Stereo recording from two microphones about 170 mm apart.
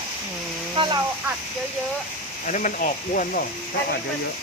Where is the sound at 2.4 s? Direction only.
50° left (ahead or behind).